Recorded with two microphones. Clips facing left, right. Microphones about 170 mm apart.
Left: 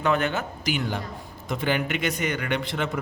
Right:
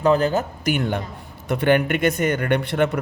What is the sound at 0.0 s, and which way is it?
Speech, 35° right (ahead or behind).